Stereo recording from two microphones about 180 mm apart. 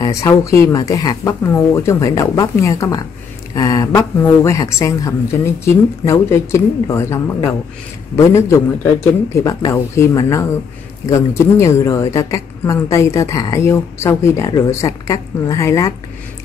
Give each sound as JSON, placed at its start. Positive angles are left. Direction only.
{"t": 0.0, "sound": "a woman's voice", "side_deg": 15}
{"t": 8.2, "sound": "a woman's voice", "side_deg": 15}